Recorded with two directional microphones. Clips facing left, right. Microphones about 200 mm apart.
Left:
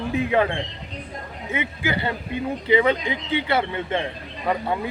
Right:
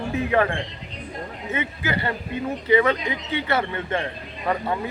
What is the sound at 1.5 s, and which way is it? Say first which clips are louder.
Speech: left 1 dB; 15° left (ahead or behind).